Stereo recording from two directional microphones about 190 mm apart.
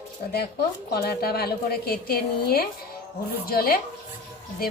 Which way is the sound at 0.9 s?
55° left (ahead or behind).